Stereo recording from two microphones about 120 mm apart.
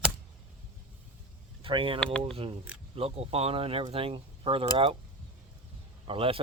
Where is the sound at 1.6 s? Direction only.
50° right (ahead or behind).